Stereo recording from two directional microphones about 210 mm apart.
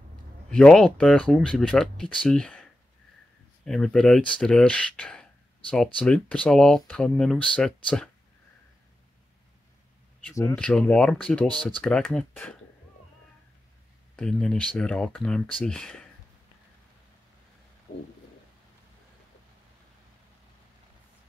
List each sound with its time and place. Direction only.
0.5 s speech: 5° left (ahead or behind)
10.2 s speech: 10° left (ahead or behind)
14.1 s speech: 5° left (ahead or behind)
17.9 s a sound: 45° left (ahead or behind)